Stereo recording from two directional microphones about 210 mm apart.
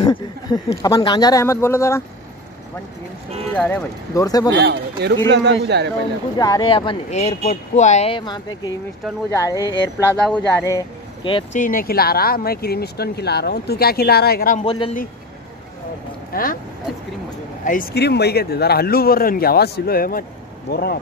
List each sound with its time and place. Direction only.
0.0 s speech: 20° left (ahead or behind)
3.5 s speech: 10° left (ahead or behind)
4.6 s speech: 55° right (ahead or behind)
6.3 s speech: 20° left (ahead or behind)
11.5 s speech: 40° left (ahead or behind)
14.6 s speech: 25° left (ahead or behind)
16.3 s speech: 45° left (ahead or behind)
17.6 s speech: 45° left (ahead or behind)